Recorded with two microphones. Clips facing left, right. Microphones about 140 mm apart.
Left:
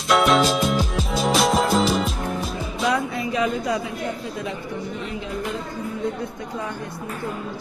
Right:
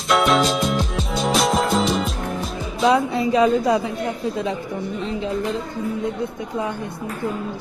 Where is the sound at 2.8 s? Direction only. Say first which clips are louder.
Right 6 dB; 30° right (ahead or behind).